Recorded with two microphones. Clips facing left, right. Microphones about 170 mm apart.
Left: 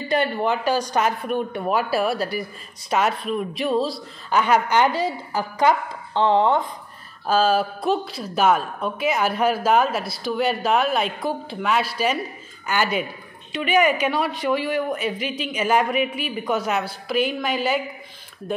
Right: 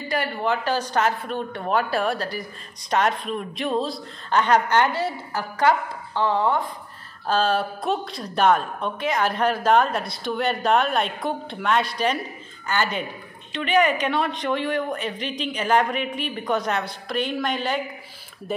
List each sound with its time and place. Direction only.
0.1 s a woman's voice: 20° left (ahead or behind)
7.2 s a woman's voice: 5° left (ahead or behind)